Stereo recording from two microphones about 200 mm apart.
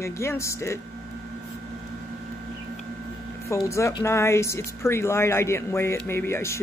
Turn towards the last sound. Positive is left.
turn(degrees=15)  # may be behind; listen again after turning